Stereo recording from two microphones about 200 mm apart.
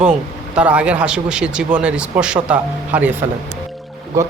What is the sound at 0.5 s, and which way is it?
Speech, 5° right (ahead or behind).